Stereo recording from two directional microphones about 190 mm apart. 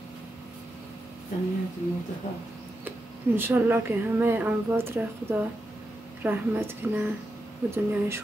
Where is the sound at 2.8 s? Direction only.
10° right (ahead or behind).